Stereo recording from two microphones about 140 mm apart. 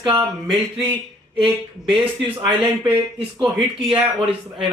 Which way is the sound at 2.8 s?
35° right (ahead or behind).